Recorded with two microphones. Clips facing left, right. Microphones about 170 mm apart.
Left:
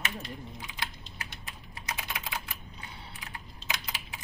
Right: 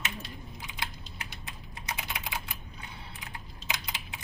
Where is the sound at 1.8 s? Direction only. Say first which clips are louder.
Even; 20° right (ahead or behind).